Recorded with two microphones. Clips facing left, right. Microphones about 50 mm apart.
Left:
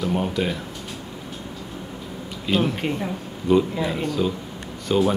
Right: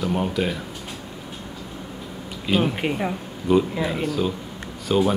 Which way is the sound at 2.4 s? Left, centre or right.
Centre.